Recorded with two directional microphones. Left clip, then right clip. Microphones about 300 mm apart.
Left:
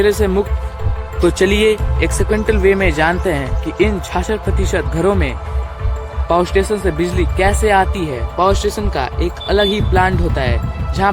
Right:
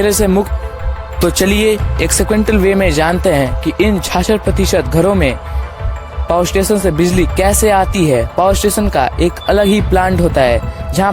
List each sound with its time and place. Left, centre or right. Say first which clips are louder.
0.0 s speech: right 2 dB; right